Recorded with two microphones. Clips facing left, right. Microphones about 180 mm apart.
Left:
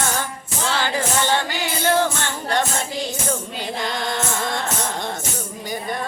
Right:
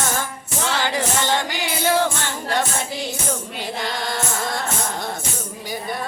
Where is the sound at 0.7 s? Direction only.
15° right (ahead or behind).